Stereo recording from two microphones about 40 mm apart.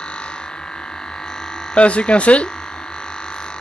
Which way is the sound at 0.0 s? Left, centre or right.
Left.